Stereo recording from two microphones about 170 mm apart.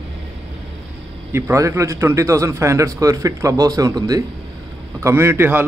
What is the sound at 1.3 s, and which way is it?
A man's voice, 15° right (ahead or behind).